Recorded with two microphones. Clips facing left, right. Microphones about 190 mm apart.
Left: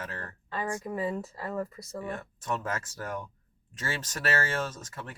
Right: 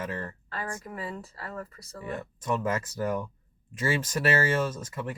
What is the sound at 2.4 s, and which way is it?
Speech, 15° right (ahead or behind).